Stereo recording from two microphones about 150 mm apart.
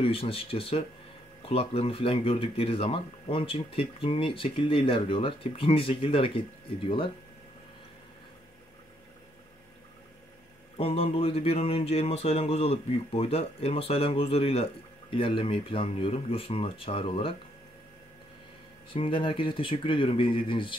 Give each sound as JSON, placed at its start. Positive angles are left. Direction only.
{"t": 0.0, "sound": "speech", "side_deg": 40}
{"t": 10.8, "sound": "speech", "side_deg": 40}
{"t": 18.9, "sound": "speech", "side_deg": 35}